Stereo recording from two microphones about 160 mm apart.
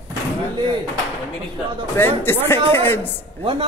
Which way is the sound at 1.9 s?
15° left (ahead or behind).